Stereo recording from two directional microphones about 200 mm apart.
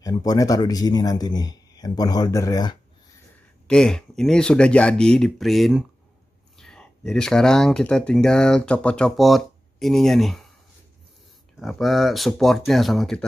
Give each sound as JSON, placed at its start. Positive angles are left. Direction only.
{"t": 0.0, "sound": "speech", "side_deg": 20}
{"t": 3.6, "sound": "speech", "side_deg": 5}
{"t": 11.6, "sound": "speech", "side_deg": 0}